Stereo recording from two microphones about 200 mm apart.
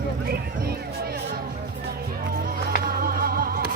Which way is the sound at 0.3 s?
50° right (ahead or behind).